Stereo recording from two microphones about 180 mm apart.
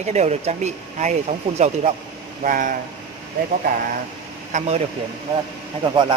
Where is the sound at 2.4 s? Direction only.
45° right (ahead or behind).